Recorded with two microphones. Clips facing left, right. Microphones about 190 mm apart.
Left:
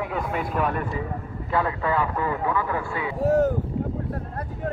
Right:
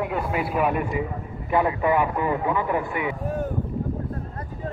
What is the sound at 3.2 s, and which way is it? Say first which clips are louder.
Speech: left 8 dB; 80° left.